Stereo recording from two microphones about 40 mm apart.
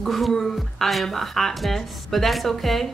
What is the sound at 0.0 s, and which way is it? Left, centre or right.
Speech, centre.